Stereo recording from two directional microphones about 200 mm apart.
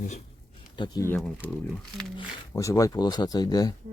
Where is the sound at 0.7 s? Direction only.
20° left (ahead or behind).